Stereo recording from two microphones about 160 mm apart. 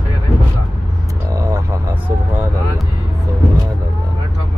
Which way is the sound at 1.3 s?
20° right (ahead or behind).